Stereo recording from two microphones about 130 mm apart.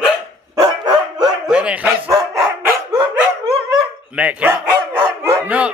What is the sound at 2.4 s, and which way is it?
Dog, 20° right (ahead or behind).